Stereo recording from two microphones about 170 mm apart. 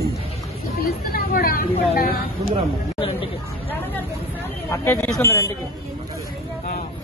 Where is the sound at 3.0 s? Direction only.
30° left (ahead or behind).